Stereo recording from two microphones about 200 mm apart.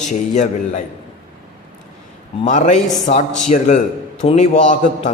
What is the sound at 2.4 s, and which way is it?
A man's voice, 40° left (ahead or behind).